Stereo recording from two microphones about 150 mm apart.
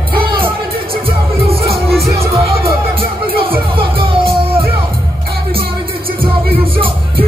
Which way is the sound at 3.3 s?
35° right (ahead or behind).